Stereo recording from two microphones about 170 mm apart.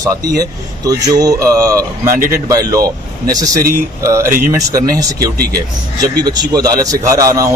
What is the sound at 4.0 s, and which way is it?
Speech, 15° right (ahead or behind).